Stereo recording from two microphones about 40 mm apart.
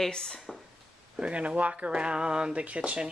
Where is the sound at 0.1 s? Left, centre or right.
Left.